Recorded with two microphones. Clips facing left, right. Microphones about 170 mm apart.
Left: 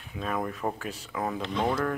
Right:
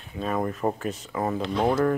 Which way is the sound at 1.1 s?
5° right (ahead or behind).